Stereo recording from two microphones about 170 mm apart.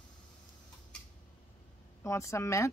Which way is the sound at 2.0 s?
15° left (ahead or behind).